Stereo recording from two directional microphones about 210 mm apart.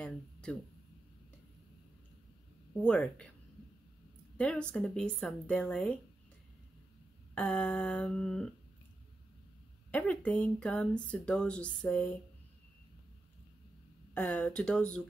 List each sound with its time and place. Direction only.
0.0 s a sound: 5° left (ahead or behind)
2.8 s speech: 5° left (ahead or behind)
4.4 s speech: 5° left (ahead or behind)
7.3 s speech: 5° left (ahead or behind)
9.8 s speech: 5° left (ahead or behind)
14.1 s speech: 5° left (ahead or behind)